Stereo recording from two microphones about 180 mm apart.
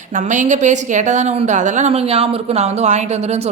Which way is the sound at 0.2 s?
45° right (ahead or behind).